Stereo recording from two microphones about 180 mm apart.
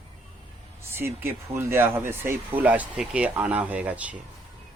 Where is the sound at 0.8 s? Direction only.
15° right (ahead or behind).